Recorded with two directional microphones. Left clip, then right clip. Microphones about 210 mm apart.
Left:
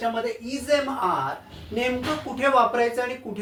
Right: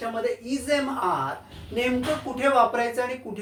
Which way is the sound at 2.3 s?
Centre (ahead or behind).